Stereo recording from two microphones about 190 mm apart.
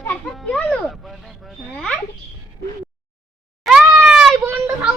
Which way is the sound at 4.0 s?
5° right (ahead or behind).